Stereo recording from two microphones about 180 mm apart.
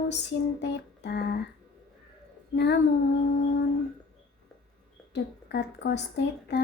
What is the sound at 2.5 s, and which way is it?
Speech, 70° left (ahead or behind).